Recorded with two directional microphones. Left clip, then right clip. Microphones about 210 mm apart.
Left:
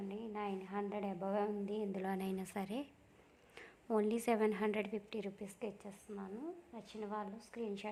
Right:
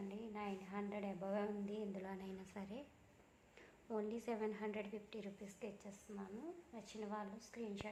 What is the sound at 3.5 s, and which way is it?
A woman's voice, 50° left (ahead or behind).